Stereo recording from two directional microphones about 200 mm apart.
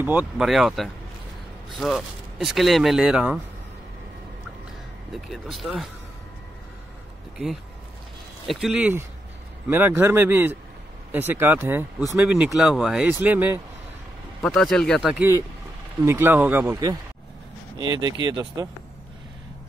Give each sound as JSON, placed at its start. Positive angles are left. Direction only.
{"t": 0.0, "sound": "speech", "side_deg": -10}
{"t": 5.1, "sound": "speech", "side_deg": 0}
{"t": 8.5, "sound": "speech", "side_deg": -5}
{"t": 14.4, "sound": "speech", "side_deg": 0}
{"t": 18.0, "sound": "speech", "side_deg": -20}